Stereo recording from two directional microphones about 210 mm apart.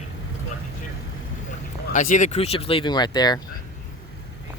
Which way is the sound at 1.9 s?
35° left (ahead or behind).